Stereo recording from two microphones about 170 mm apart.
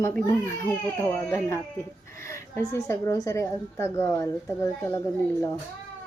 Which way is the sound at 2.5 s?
15° left (ahead or behind).